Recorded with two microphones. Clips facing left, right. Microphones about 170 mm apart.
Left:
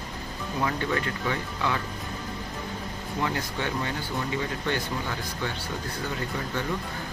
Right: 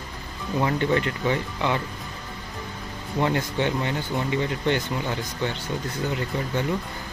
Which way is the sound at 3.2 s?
20° right (ahead or behind).